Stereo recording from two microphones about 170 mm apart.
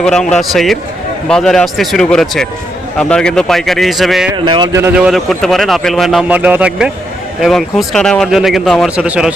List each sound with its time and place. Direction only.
0.0 s a man's voice: 5° left (ahead or behind)
4.4 s speech: 25° right (ahead or behind)
4.9 s a man's voice: centre (ahead or behind)